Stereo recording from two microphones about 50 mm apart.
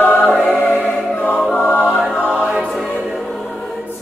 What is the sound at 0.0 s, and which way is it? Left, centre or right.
Choir, left.